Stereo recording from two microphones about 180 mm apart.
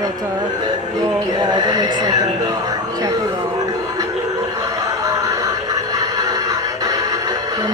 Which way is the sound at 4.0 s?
20° right (ahead or behind).